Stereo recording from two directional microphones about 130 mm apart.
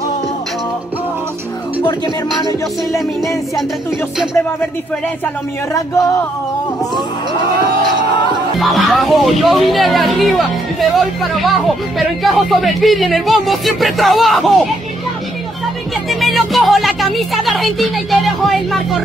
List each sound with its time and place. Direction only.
5.7 s a sound: 25° left (ahead or behind)
8.5 s speech: centre (ahead or behind)
16.1 s speech: centre (ahead or behind)